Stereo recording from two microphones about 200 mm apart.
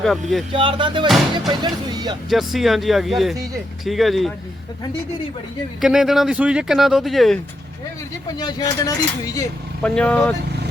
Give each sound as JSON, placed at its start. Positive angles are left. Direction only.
{"t": 0.0, "sound": "speech", "side_deg": 0}
{"t": 0.5, "sound": "music", "side_deg": -25}
{"t": 1.0, "sound": "speech", "side_deg": 0}
{"t": 1.6, "sound": "music", "side_deg": -20}
{"t": 2.3, "sound": "speech", "side_deg": 0}
{"t": 5.8, "sound": "speech", "side_deg": 0}
{"t": 8.4, "sound": "speech", "side_deg": 20}
{"t": 9.8, "sound": "speech", "side_deg": 5}